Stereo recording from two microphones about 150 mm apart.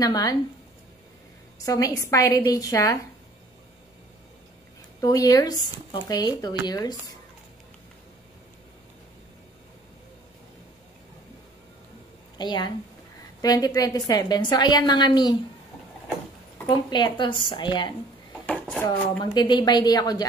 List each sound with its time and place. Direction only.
0.0 s speech: 25° left (ahead or behind)
1.7 s speech: 20° left (ahead or behind)
5.0 s speech: 25° left (ahead or behind)
12.4 s speech: 30° left (ahead or behind)
16.6 s speech: 30° left (ahead or behind)
18.5 s dishes: 10° left (ahead or behind)
19.3 s speech: 30° left (ahead or behind)